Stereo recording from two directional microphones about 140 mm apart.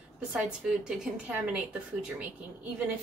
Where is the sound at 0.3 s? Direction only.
5° right (ahead or behind).